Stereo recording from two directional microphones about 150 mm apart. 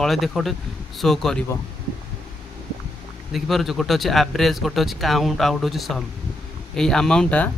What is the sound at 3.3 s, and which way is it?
Speech, centre (ahead or behind).